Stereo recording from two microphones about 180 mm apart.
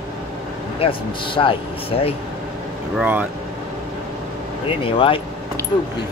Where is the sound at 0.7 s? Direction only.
30° left (ahead or behind).